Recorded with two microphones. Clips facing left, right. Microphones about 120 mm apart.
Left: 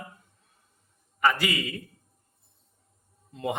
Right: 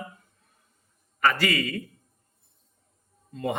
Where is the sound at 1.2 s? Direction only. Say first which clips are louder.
Right 1 dB; 15° left (ahead or behind).